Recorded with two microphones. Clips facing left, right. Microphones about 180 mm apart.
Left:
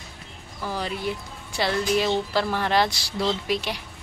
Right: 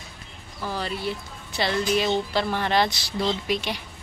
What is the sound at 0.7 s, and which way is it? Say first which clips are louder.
Speech: even; 15° left (ahead or behind).